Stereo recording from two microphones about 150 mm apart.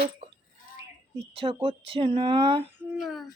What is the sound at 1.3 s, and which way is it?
Speech, 40° right (ahead or behind).